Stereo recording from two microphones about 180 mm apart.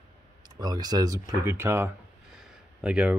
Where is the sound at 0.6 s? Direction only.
20° right (ahead or behind).